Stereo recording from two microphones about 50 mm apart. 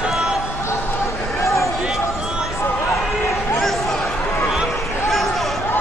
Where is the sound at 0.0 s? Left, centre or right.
Centre.